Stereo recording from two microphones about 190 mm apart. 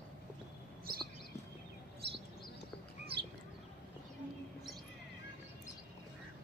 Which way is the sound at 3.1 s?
60° right (ahead or behind).